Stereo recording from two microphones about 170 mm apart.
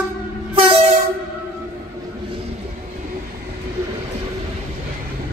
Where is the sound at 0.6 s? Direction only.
35° right (ahead or behind).